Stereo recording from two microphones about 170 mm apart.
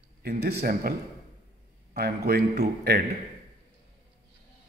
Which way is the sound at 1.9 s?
65° right (ahead or behind).